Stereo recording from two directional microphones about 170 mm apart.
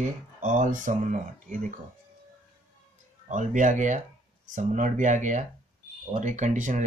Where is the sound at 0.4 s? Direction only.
50° right (ahead or behind).